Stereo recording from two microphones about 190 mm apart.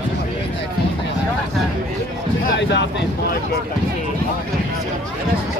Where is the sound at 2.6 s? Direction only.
65° left (ahead or behind).